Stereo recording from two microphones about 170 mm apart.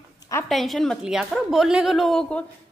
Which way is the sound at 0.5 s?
Centre (ahead or behind).